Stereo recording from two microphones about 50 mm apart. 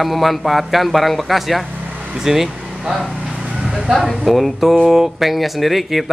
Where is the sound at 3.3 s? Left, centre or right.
Centre.